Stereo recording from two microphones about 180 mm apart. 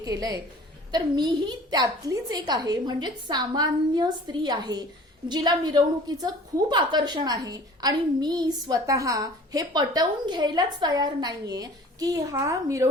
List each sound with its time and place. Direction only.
0.0 s a woman's voice: 20° right (ahead or behind)